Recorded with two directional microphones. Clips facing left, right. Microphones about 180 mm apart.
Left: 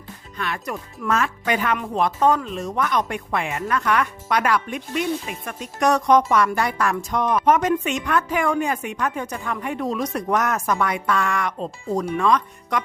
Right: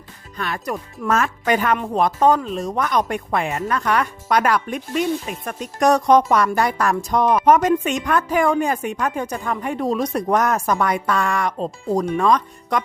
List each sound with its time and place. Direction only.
0.3 s a woman's voice: 40° right (ahead or behind)